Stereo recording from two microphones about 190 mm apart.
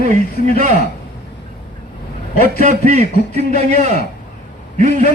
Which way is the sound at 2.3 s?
50° left (ahead or behind).